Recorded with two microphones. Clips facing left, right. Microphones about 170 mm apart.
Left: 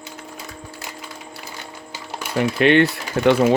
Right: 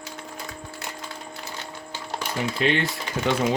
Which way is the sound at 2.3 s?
65° left (ahead or behind).